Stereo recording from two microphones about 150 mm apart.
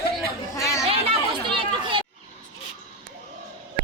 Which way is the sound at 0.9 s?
35° right (ahead or behind).